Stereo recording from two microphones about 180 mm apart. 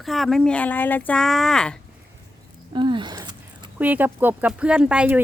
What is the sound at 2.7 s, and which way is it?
Speech, 25° right (ahead or behind).